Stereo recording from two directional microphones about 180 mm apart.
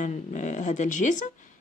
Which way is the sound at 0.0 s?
45° left (ahead or behind).